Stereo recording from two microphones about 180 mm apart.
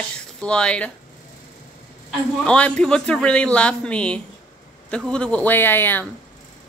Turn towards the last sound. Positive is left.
turn(degrees=10)  # may be behind; listen again after turning